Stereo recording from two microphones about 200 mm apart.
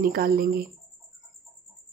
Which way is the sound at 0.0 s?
50° right (ahead or behind).